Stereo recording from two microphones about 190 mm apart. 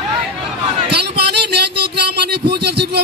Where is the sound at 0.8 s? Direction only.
60° right (ahead or behind).